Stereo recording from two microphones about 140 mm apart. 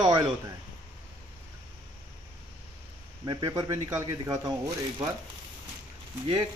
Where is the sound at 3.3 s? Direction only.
25° right (ahead or behind).